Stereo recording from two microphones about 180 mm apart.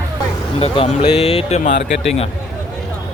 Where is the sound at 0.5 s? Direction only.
30° left (ahead or behind).